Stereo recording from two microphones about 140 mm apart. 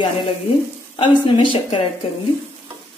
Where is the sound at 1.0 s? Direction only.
35° left (ahead or behind).